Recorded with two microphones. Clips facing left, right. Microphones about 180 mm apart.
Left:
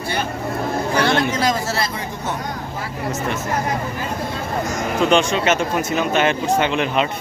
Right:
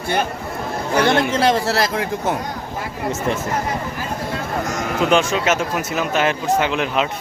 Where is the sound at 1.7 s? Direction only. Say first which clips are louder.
Right 4 dB; 90° right.